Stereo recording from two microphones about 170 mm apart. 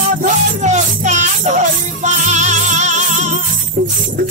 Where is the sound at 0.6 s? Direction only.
45° right (ahead or behind).